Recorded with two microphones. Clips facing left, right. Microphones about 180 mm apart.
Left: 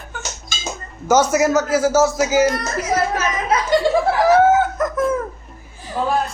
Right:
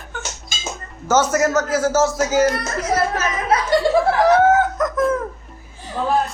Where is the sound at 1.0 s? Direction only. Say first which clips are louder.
Left 2 dB; 10° left (ahead or behind).